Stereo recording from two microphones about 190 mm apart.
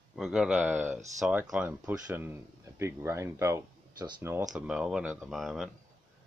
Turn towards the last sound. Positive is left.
turn(degrees=0)  # may be behind; listen again after turning